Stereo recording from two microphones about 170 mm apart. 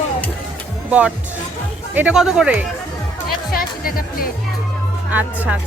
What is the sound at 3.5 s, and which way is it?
Speech, 60° left (ahead or behind).